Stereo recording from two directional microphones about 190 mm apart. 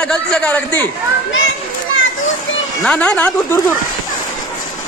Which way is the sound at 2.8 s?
5° left (ahead or behind).